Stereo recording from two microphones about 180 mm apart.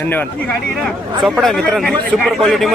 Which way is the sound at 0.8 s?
Centre (ahead or behind).